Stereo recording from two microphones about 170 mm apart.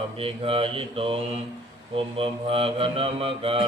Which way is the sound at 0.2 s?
35° right (ahead or behind).